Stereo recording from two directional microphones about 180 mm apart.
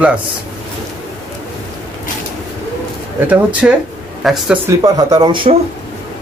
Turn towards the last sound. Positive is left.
turn(degrees=-25)  # may be behind; listen again after turning